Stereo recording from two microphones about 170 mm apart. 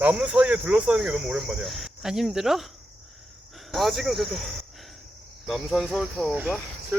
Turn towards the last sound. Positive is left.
turn(degrees=-5)  # may be behind; listen again after turning